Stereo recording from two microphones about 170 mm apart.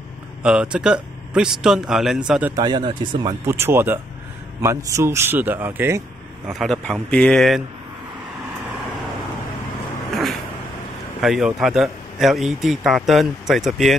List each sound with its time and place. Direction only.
0.4 s speech: 5° right (ahead or behind)
2.5 s speech: 25° right (ahead or behind)
3.3 s a man's voice: 15° right (ahead or behind)
6.5 s speech: centre (ahead or behind)
11.1 s speech: centre (ahead or behind)